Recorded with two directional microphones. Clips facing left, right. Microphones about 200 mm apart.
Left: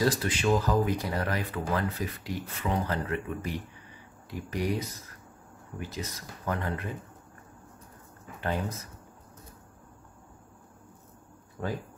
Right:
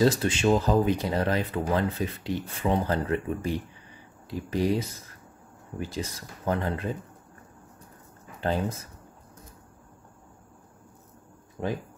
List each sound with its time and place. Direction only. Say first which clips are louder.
0.0 s speech: right 4 dB; 25° right (ahead or behind)
11.6 s speech: right 3 dB; 20° right (ahead or behind)